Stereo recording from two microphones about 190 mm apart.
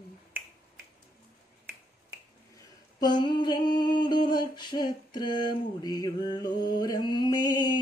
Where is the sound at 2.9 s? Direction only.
20° left (ahead or behind).